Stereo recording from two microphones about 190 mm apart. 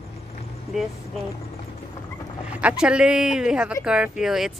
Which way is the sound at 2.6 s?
5° right (ahead or behind).